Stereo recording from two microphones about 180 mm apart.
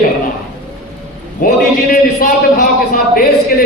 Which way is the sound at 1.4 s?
50° left (ahead or behind).